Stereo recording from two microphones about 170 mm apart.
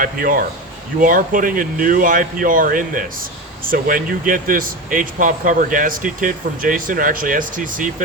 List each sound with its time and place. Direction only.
0.0 s a man's voice: 55° right (ahead or behind)